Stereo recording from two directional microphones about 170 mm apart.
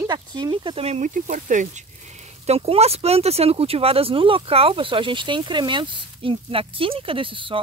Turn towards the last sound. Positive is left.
turn(degrees=-30)  # may be behind; listen again after turning